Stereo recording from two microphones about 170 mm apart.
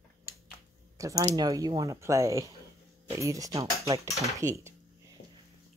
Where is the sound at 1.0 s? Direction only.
20° right (ahead or behind).